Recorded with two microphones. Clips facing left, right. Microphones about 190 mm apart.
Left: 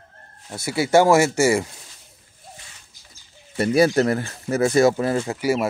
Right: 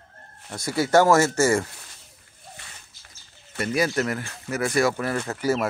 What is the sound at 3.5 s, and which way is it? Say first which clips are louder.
Speech: left 7 dB; 30° left (ahead or behind).